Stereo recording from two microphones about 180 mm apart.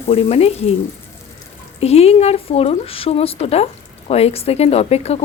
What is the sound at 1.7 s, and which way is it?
Speech, 35° left (ahead or behind).